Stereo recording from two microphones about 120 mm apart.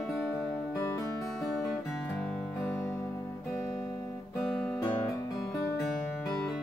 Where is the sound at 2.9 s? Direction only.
25° left (ahead or behind).